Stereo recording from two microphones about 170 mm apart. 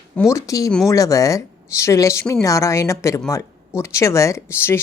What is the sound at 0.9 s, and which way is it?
Speech, 20° left (ahead or behind).